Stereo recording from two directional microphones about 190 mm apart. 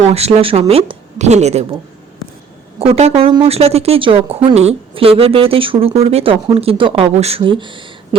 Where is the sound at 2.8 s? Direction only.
30° right (ahead or behind).